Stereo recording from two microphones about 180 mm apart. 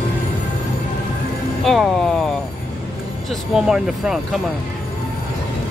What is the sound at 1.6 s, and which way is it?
Speech, centre (ahead or behind).